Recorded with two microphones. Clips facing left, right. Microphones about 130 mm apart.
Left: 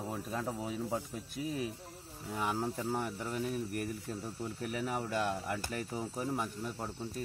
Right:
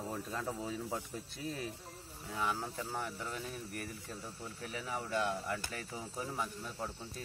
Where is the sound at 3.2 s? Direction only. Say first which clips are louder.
Left 6 dB; 45° left (ahead or behind).